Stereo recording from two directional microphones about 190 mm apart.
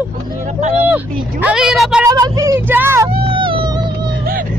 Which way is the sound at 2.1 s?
20° right (ahead or behind).